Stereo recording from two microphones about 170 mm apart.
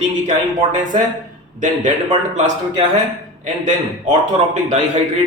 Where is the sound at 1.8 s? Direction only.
45° right (ahead or behind).